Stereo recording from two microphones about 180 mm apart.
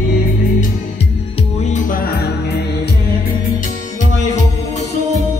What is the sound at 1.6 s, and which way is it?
Music, 45° left (ahead or behind).